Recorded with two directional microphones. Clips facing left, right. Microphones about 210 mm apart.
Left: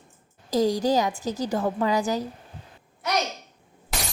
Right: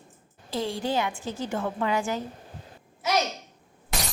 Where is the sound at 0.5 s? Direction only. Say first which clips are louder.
Left 6 dB; 40° left (ahead or behind).